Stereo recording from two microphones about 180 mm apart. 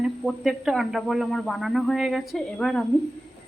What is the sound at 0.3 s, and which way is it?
Speech, centre (ahead or behind).